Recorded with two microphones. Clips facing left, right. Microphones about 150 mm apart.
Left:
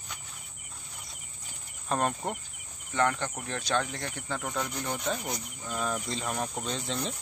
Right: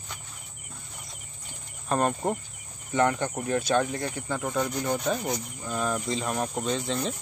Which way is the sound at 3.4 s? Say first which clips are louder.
Right 6 dB; 10° right (ahead or behind).